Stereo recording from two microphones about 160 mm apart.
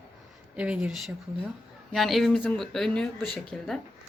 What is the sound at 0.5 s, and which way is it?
Speech, 5° right (ahead or behind).